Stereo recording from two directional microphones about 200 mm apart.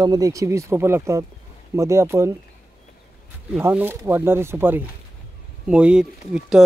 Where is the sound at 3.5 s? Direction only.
10° right (ahead or behind).